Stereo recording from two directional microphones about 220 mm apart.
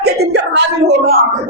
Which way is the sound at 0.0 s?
45° right (ahead or behind).